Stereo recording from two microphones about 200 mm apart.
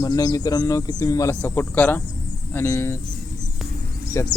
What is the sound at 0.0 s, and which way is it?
Speech, 20° left (ahead or behind).